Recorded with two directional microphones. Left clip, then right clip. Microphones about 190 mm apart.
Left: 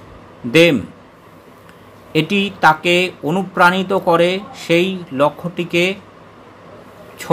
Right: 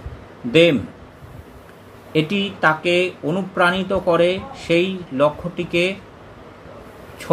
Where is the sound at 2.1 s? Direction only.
25° left (ahead or behind).